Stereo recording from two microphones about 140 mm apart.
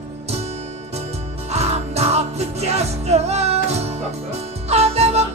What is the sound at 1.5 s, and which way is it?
Music, 50° right (ahead or behind).